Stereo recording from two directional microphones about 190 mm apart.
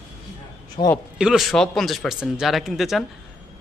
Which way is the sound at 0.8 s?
25° left (ahead or behind).